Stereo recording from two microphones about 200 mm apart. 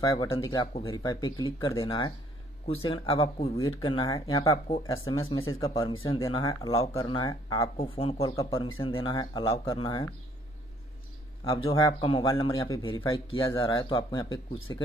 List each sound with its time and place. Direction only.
0.0 s a man's voice: 20° left (ahead or behind)
11.4 s a man's voice: 25° left (ahead or behind)